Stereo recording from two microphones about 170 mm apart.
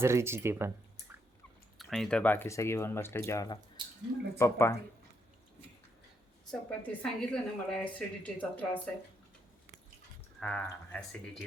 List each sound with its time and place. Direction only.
0.0 s speech: 15° right (ahead or behind)
1.8 s speech: centre (ahead or behind)
6.5 s a woman's voice: 5° left (ahead or behind)
10.4 s a woman's voice: 5° left (ahead or behind)